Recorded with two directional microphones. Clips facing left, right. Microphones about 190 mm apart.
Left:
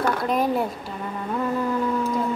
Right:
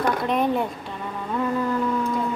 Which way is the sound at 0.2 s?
Centre (ahead or behind).